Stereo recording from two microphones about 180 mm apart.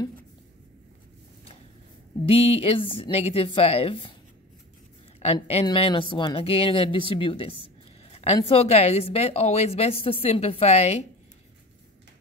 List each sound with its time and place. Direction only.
2.2 s a woman's voice: 30° left (ahead or behind)
5.2 s a woman's voice: 35° left (ahead or behind)